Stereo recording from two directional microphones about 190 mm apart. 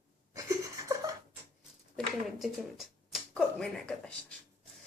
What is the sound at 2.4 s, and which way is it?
Speech, centre (ahead or behind).